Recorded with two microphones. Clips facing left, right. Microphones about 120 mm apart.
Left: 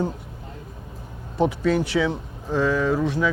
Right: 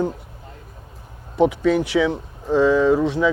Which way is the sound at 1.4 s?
15° right (ahead or behind).